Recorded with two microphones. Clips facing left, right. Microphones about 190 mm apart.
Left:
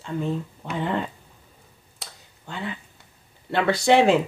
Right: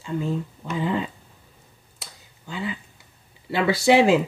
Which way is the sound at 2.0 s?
Centre (ahead or behind).